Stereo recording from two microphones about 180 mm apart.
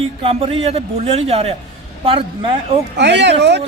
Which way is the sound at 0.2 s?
35° right (ahead or behind).